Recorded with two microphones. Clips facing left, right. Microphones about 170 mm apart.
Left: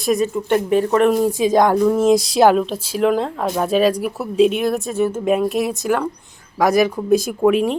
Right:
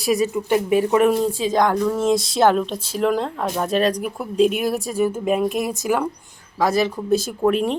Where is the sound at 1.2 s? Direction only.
15° left (ahead or behind); by 6.1 s 5° right (ahead or behind).